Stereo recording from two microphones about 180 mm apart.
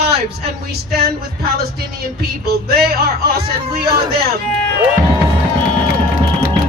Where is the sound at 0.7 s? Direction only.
60° right (ahead or behind).